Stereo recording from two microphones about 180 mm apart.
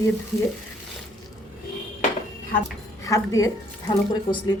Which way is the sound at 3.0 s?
20° left (ahead or behind).